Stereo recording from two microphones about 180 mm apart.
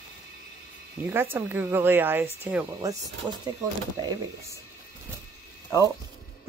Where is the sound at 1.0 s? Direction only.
10° right (ahead or behind).